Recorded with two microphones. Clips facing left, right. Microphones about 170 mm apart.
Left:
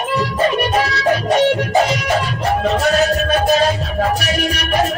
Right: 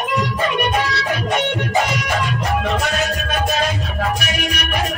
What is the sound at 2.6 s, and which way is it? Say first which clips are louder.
Music: left 6 dB; 35° left (ahead or behind).